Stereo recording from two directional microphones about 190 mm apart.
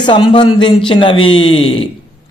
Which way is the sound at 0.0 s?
25° left (ahead or behind).